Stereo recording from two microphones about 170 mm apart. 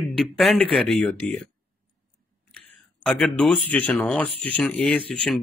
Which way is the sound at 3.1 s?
Centre (ahead or behind).